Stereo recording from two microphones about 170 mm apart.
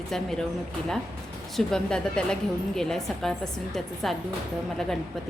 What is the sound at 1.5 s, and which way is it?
A woman's voice, 5° left (ahead or behind).